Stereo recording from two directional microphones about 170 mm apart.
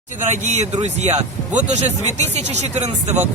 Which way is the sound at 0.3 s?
40° right (ahead or behind).